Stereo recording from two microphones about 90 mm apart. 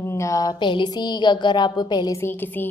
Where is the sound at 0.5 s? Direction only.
60° left (ahead or behind).